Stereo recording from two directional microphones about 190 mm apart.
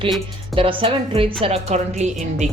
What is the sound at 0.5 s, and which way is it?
A woman's voice, 30° right (ahead or behind).